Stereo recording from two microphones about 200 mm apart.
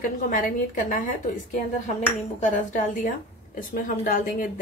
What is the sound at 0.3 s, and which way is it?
Speech, 40° left (ahead or behind).